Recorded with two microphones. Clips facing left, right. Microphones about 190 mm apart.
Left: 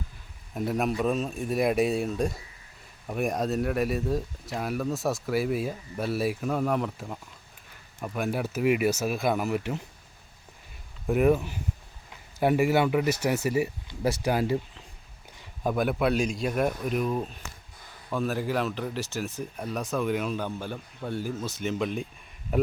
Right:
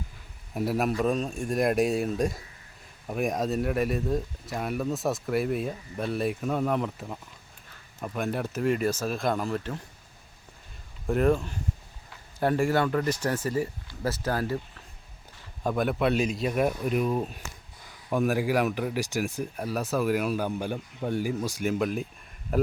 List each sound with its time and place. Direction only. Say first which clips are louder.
0.5 s speech: right 1 dB; 5° right (ahead or behind); by 9.7 s 10° left (ahead or behind)
11.0 s speech: left 1 dB; 5° left (ahead or behind)
15.6 s speech: even; 5° left (ahead or behind)